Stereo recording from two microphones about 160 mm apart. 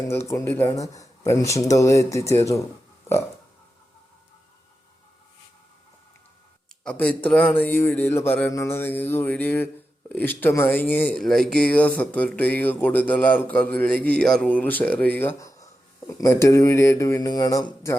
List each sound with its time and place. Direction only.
0.1 s speech: 15° left (ahead or behind)
6.8 s speech: 10° left (ahead or behind)